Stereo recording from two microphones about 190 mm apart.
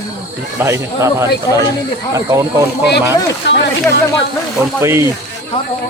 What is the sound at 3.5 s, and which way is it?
Speech, 70° left (ahead or behind).